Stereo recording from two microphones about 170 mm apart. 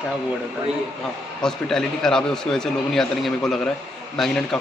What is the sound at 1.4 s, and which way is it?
A man's voice, 5° left (ahead or behind).